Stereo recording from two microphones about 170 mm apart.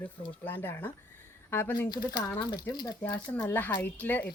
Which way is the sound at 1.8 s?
25° left (ahead or behind).